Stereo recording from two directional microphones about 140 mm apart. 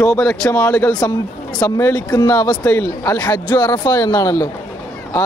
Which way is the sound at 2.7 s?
20° left (ahead or behind).